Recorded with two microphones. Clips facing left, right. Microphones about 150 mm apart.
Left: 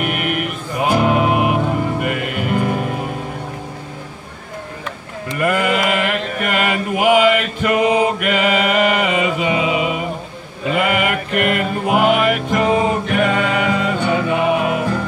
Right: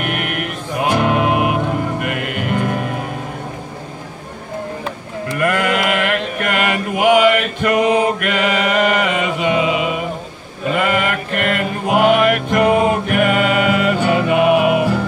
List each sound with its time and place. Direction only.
0.0 s music: centre (ahead or behind)
5.4 s mantra: 5° left (ahead or behind)
10.7 s music: 10° left (ahead or behind); by 15.0 s 10° right (ahead or behind)